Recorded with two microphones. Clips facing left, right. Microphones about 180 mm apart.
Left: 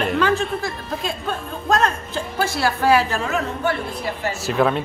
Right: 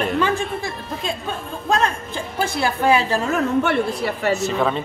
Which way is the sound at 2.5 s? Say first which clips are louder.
Even; 20° right (ahead or behind).